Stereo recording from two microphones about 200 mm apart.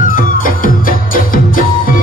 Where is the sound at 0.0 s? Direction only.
45° left (ahead or behind).